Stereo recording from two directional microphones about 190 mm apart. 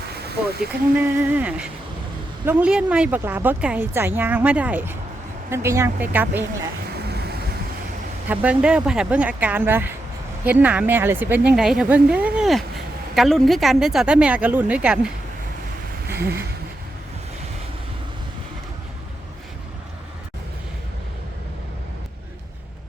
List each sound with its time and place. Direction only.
0.7 s a woman's voice: 10° right (ahead or behind)
8.3 s a woman's voice: 5° right (ahead or behind)
16.2 s speech: 55° right (ahead or behind)